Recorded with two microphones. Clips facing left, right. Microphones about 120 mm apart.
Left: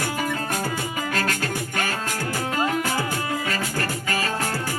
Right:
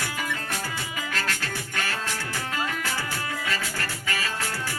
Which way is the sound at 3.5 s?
45° left (ahead or behind).